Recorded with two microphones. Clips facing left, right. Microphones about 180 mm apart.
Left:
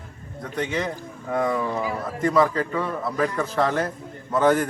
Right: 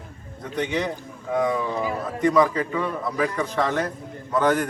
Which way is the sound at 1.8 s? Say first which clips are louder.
Right 1 dB; 20° right (ahead or behind).